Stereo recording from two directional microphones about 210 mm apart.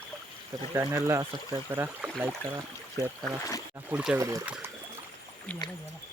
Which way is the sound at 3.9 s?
5° right (ahead or behind).